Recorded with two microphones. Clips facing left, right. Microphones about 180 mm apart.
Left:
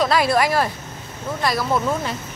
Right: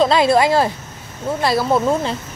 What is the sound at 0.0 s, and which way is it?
Speech, 25° right (ahead or behind).